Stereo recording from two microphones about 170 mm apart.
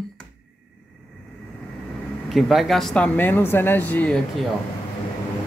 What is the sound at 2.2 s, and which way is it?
Speech, centre (ahead or behind).